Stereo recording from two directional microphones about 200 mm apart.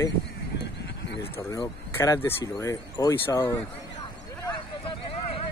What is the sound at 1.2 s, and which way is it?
Speech, 10° left (ahead or behind).